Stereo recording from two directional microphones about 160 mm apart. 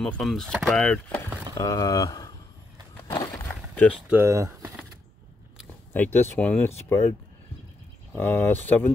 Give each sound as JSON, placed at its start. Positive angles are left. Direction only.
{"t": 0.0, "sound": "speech", "side_deg": 0}
{"t": 1.6, "sound": "speech", "side_deg": 20}
{"t": 3.1, "sound": "a sound", "side_deg": 25}
{"t": 3.4, "sound": "a sound", "side_deg": 10}
{"t": 4.1, "sound": "speech", "side_deg": -15}
{"t": 5.9, "sound": "speech", "side_deg": 15}